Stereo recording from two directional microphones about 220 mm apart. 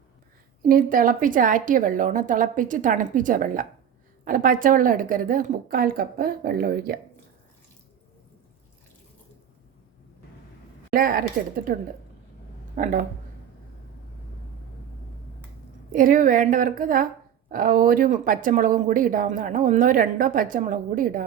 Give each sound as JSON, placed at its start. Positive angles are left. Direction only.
{"t": 0.7, "sound": "speech", "side_deg": -40}
{"t": 10.9, "sound": "speech", "side_deg": -40}
{"t": 12.7, "sound": "speech", "side_deg": -35}
{"t": 15.9, "sound": "speech", "side_deg": -40}